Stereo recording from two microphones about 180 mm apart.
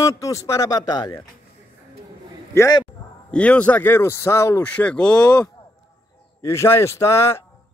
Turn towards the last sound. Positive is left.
turn(degrees=15)  # may be behind; listen again after turning